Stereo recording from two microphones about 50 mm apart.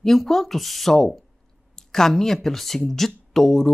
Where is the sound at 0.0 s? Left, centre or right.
Centre.